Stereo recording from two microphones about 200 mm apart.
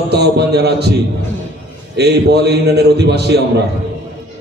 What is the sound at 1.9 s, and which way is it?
A man's voice, 55° right (ahead or behind).